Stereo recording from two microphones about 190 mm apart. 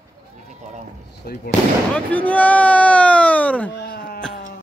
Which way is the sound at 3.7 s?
55° left (ahead or behind).